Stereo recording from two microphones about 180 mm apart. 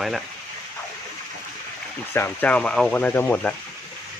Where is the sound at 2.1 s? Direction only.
10° left (ahead or behind).